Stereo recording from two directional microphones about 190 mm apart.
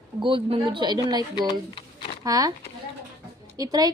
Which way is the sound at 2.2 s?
20° right (ahead or behind).